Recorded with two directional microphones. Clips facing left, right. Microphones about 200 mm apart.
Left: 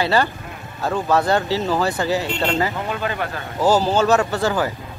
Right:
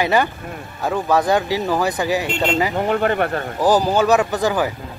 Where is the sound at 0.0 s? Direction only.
15° right (ahead or behind).